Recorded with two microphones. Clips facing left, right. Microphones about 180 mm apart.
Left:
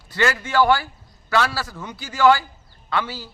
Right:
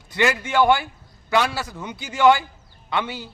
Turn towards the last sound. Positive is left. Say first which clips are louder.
# even
turn(degrees=-20)  # may be behind; listen again after turning